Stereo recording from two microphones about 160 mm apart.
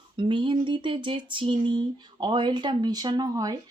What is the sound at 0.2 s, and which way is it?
Speech, 30° right (ahead or behind).